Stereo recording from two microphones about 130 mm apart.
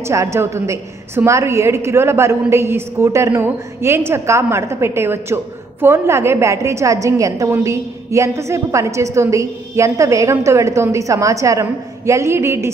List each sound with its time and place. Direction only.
0.0 s a woman's voice: 20° right (ahead or behind)